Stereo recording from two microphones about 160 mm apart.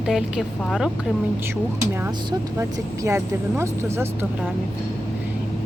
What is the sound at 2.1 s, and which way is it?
Speech, 25° right (ahead or behind).